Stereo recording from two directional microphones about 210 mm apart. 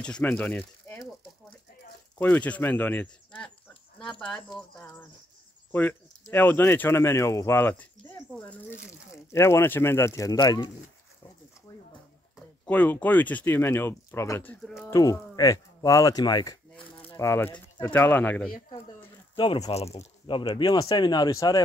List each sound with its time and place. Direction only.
0.0 s speech: 5° left (ahead or behind)
2.1 s speech: 5° left (ahead or behind)
11.7 s a sound: 15° left (ahead or behind)
12.6 s speech: 10° left (ahead or behind)
14.9 s speech: 15° left (ahead or behind)
19.3 s speech: 25° left (ahead or behind)